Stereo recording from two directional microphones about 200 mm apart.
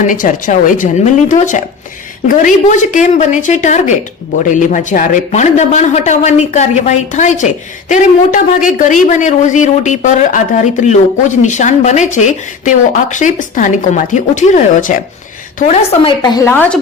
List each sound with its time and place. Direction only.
0.0 s a woman's voice: 40° left (ahead or behind)
16.0 s a woman's voice: 20° left (ahead or behind)